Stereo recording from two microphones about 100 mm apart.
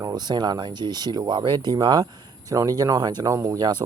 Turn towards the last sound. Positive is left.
turn(degrees=-45)  # may be behind; listen again after turning